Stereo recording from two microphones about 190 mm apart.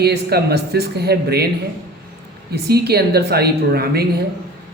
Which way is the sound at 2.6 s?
55° right (ahead or behind).